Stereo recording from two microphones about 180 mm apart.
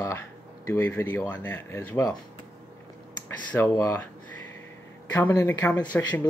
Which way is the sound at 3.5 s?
15° left (ahead or behind).